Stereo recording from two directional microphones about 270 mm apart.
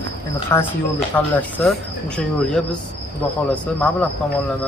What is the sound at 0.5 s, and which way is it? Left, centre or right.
A man's voice, centre.